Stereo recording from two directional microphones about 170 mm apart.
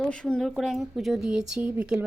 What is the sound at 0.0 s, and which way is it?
Speech, 5° left (ahead or behind).